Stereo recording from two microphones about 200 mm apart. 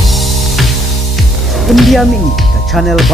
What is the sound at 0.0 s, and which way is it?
Music, centre (ahead or behind).